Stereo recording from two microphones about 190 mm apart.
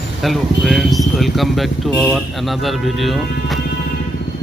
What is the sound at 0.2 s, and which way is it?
Speech, centre (ahead or behind).